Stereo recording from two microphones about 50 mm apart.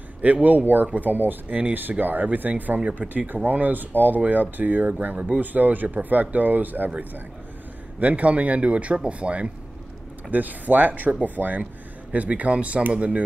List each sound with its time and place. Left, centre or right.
0.2 s speech: right
8.0 s speech: right
10.3 s speech: right